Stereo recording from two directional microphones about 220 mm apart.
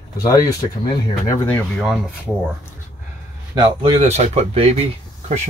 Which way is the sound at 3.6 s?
25° right (ahead or behind).